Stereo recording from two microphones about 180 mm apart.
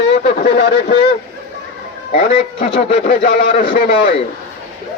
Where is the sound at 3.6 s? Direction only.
50° left (ahead or behind).